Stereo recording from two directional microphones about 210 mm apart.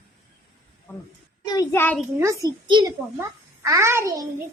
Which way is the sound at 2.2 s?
15° right (ahead or behind).